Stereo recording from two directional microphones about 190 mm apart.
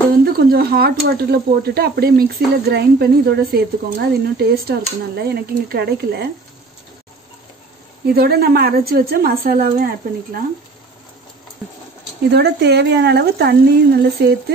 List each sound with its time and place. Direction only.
0.2 s speech: 55° right (ahead or behind)
8.1 s a woman's voice: 55° right (ahead or behind)
12.3 s speech: 60° right (ahead or behind)